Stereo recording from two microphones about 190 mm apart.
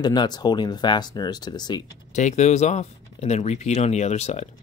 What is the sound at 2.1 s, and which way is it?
Speech, 40° left (ahead or behind).